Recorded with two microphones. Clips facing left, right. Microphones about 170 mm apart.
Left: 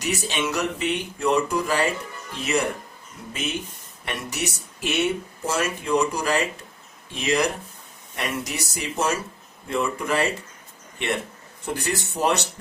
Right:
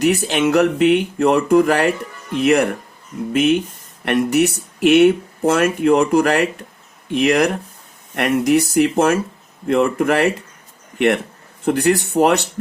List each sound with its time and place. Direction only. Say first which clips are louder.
0.0 s speech: right 10 dB; 60° right (ahead or behind)
4.0 s speech: right 14 dB; 60° right (ahead or behind)